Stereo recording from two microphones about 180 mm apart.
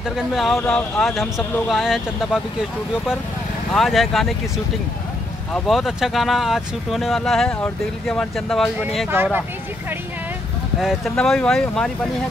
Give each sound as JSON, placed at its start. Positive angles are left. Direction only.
{"t": 0.3, "sound": "speech", "side_deg": 0}
{"t": 3.7, "sound": "speech", "side_deg": 0}
{"t": 5.5, "sound": "speech", "side_deg": 0}
{"t": 9.1, "sound": "speech", "side_deg": -10}
{"t": 10.8, "sound": "speech", "side_deg": 0}